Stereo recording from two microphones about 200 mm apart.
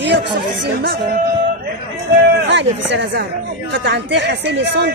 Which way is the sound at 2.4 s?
65° right (ahead or behind).